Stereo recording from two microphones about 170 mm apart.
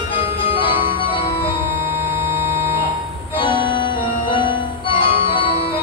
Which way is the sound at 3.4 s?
30° left (ahead or behind).